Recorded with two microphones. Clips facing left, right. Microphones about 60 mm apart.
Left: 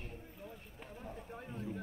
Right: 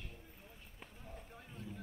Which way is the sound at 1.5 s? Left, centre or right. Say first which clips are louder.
Left 6 dB; left.